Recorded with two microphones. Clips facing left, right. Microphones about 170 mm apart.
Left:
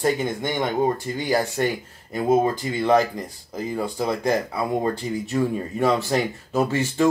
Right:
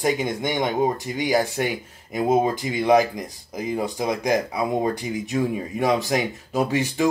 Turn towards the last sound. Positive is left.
turn(degrees=-15)  # may be behind; listen again after turning